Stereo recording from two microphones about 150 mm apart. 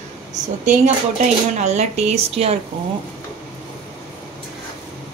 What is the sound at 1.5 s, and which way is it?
A woman's voice, 50° right (ahead or behind).